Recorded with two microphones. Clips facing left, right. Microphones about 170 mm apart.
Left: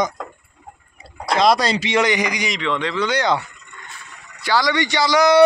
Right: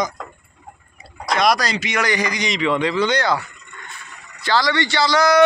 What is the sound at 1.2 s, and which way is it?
Speech, 25° left (ahead or behind).